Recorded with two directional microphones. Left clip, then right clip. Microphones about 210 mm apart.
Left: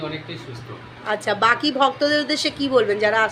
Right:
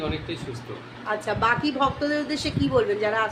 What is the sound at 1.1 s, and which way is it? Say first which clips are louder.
A woman's voice: left 5 dB; 20° left (ahead or behind).